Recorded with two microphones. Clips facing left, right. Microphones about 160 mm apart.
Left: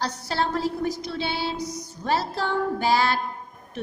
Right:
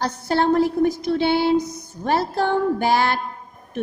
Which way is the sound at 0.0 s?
55° right (ahead or behind).